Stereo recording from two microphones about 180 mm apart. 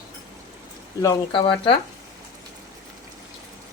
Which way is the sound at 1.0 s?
25° left (ahead or behind).